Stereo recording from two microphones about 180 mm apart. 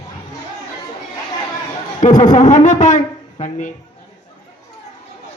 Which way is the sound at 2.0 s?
45° left (ahead or behind).